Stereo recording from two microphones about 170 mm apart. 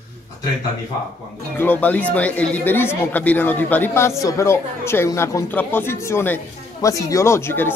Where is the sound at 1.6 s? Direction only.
10° left (ahead or behind).